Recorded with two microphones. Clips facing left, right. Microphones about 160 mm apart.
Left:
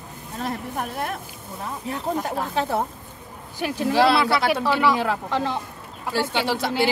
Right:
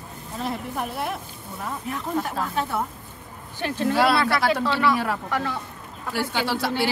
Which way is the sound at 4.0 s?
25° left (ahead or behind).